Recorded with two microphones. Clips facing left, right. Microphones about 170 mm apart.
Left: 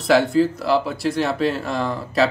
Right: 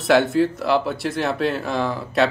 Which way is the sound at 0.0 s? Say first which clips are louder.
Left 1 dB; centre (ahead or behind).